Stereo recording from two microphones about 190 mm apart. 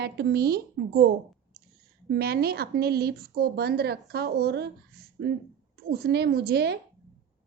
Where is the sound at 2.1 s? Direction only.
55° right (ahead or behind).